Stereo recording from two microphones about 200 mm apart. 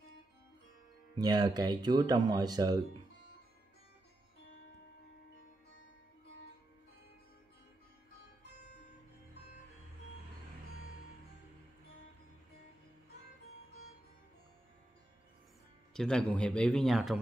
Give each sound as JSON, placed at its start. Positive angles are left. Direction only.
{"t": 1.1, "sound": "speech", "side_deg": -20}
{"t": 15.9, "sound": "a man's voice", "side_deg": 5}